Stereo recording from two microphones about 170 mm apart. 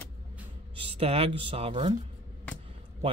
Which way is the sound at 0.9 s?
35° right (ahead or behind).